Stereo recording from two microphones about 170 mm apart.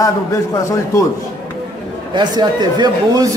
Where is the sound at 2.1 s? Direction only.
25° right (ahead or behind).